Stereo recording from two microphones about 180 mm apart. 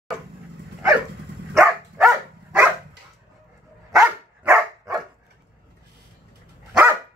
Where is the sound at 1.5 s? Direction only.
Centre (ahead or behind).